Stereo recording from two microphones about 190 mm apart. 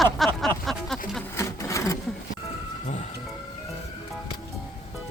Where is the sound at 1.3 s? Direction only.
15° left (ahead or behind).